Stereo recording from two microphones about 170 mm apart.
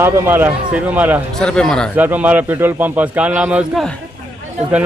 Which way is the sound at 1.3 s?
5° left (ahead or behind).